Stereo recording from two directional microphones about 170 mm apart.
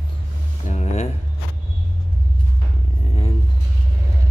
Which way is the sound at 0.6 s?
40° left (ahead or behind).